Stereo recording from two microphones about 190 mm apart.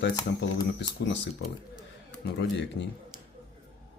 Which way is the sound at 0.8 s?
65° left (ahead or behind).